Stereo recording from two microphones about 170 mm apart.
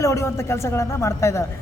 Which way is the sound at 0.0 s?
20° left (ahead or behind).